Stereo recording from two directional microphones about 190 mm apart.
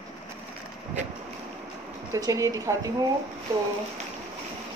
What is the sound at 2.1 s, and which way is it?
Speech, 15° right (ahead or behind).